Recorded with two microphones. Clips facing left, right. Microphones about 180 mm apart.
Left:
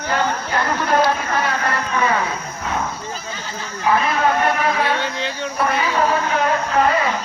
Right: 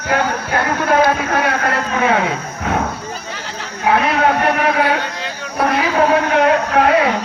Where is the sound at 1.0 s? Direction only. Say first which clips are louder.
Right 4 dB; 60° right (ahead or behind).